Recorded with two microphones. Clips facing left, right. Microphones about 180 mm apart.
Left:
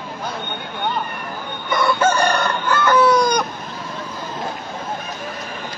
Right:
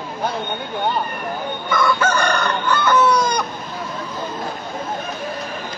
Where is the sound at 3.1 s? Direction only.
15° left (ahead or behind).